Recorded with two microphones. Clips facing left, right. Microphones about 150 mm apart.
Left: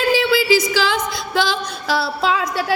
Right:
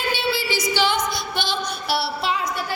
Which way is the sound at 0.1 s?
90° left.